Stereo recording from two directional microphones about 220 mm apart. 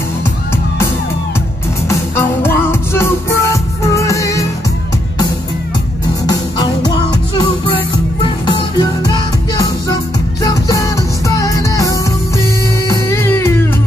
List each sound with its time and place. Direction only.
1.9 s music: 10° left (ahead or behind)
6.2 s music: 20° left (ahead or behind)